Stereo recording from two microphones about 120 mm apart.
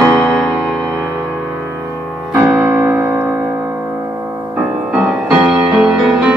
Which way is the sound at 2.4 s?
20° right (ahead or behind).